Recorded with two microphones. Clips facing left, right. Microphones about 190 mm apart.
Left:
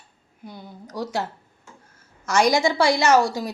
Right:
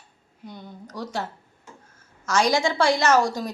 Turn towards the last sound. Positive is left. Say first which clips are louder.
# left 2 dB
turn(degrees=10)  # may be behind; listen again after turning